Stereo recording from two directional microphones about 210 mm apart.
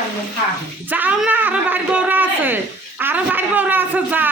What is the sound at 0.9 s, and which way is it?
A man's voice, 5° right (ahead or behind).